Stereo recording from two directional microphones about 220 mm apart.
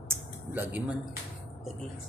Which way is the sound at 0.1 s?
10° right (ahead or behind).